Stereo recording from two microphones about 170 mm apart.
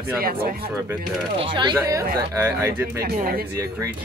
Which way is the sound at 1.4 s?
30° right (ahead or behind).